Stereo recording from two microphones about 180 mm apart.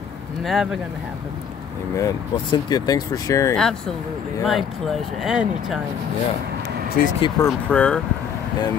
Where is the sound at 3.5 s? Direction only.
5° left (ahead or behind).